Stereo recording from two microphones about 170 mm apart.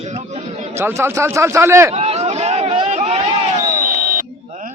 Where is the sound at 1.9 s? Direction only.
40° right (ahead or behind).